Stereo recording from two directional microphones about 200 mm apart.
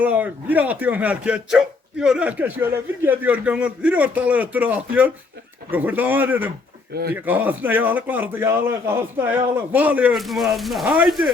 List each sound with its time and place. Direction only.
0.0 s speech: 10° right (ahead or behind)
6.9 s speech: 50° right (ahead or behind)
7.3 s speech: 10° right (ahead or behind)